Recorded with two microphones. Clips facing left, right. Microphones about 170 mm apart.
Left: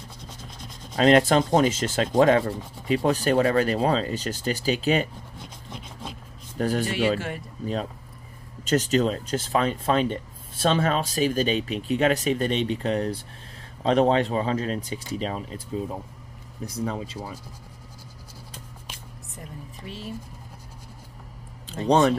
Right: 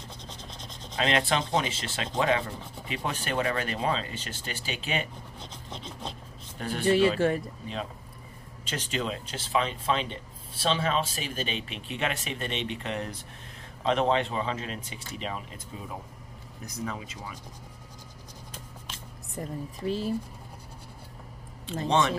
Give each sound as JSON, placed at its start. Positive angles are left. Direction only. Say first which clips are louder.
{"t": 0.3, "sound": "rub", "louder": "left 1 dB", "side_deg": 10}
{"t": 0.9, "sound": "speech", "louder": "left 9 dB", "side_deg": 45}
{"t": 5.4, "sound": "rub", "louder": "even", "side_deg": 10}
{"t": 6.6, "sound": "speech", "louder": "left 7 dB", "side_deg": 40}
{"t": 7.2, "sound": "speech", "louder": "right 7 dB", "side_deg": -35}
{"t": 8.6, "sound": "speech", "louder": "left 10 dB", "side_deg": 40}
{"t": 19.3, "sound": "speech", "louder": "right 7 dB", "side_deg": -35}
{"t": 21.8, "sound": "speech", "louder": "left 6 dB", "side_deg": 40}